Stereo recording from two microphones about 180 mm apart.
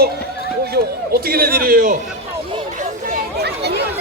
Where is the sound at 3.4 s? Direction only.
65° right (ahead or behind).